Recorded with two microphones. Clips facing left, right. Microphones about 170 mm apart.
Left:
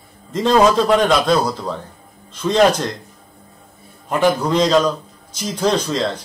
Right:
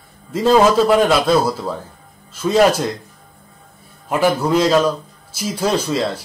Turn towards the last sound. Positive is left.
turn(degrees=-5)  # may be behind; listen again after turning